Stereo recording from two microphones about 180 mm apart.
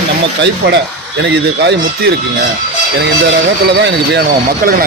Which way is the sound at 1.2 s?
70° right (ahead or behind).